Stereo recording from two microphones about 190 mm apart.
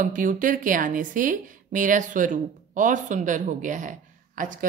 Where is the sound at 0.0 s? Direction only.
45° right (ahead or behind).